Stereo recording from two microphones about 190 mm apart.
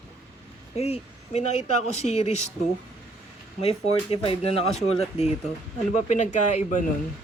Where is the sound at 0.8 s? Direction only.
35° left (ahead or behind).